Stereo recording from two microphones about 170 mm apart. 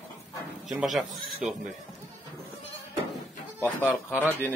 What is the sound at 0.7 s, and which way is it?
Speech, 5° right (ahead or behind).